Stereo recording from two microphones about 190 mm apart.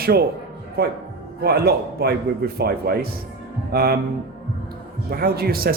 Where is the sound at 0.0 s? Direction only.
55° right (ahead or behind).